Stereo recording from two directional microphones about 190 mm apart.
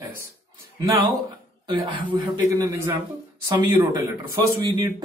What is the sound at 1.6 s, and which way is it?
A woman's voice, 25° right (ahead or behind).